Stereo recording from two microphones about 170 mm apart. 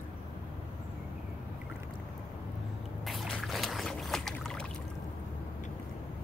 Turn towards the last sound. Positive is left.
turn(degrees=0)  # may be behind; listen again after turning